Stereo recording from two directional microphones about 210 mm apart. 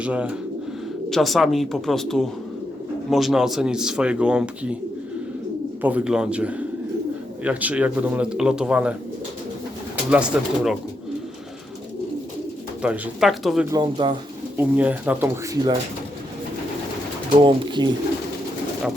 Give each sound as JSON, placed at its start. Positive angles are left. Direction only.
{"t": 0.0, "sound": "speech", "side_deg": -5}
{"t": 5.8, "sound": "speech", "side_deg": -5}
{"t": 10.1, "sound": "speech", "side_deg": -5}
{"t": 12.8, "sound": "speech", "side_deg": -5}
{"t": 13.7, "sound": "speech", "side_deg": -20}
{"t": 14.5, "sound": "speech", "side_deg": -10}
{"t": 17.8, "sound": "speech", "side_deg": -20}